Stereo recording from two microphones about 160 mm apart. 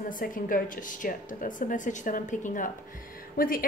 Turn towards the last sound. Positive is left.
turn(degrees=60)  # may be behind; listen again after turning